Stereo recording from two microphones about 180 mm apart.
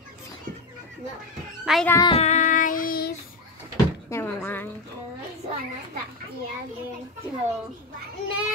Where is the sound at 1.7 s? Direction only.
5° right (ahead or behind).